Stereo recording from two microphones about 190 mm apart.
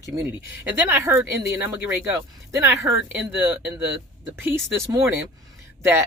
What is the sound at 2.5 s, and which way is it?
Speech, 15° right (ahead or behind).